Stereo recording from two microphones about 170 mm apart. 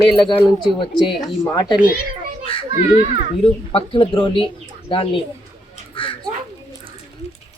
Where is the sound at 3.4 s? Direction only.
30° left (ahead or behind).